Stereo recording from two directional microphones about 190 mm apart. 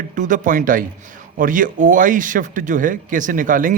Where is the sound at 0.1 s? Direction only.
40° right (ahead or behind).